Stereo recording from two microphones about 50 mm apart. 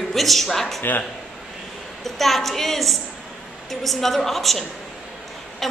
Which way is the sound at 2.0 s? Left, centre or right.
Centre.